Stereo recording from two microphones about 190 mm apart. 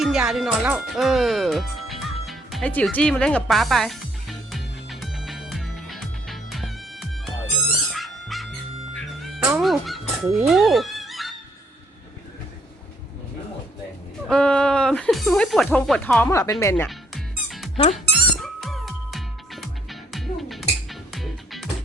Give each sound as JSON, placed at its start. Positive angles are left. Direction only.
{"t": 0.0, "sound": "speech", "side_deg": -5}
{"t": 3.4, "sound": "music", "side_deg": 0}
{"t": 9.6, "sound": "speech", "side_deg": 0}
{"t": 14.3, "sound": "speech", "side_deg": 5}
{"t": 17.9, "sound": "music", "side_deg": 0}